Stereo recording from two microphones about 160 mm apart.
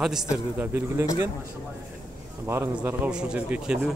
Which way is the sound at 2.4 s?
15° right (ahead or behind).